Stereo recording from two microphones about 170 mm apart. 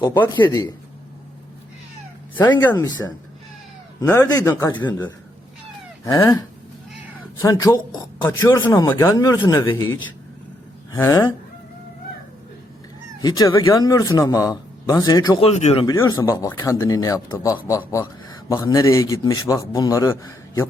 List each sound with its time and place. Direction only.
0.0 s a man's voice: 25° left (ahead or behind)
2.3 s speech: 25° left (ahead or behind)
2.6 s speech: 10° left (ahead or behind)
4.0 s a man's voice: 20° left (ahead or behind)
6.1 s a man's voice: 20° left (ahead or behind)
7.4 s a man's voice: 20° left (ahead or behind)
10.9 s speech: 15° left (ahead or behind)
13.2 s a man's voice: 25° left (ahead or behind)
15.4 s speech: 40° left (ahead or behind)
16.0 s a man's voice: 20° left (ahead or behind)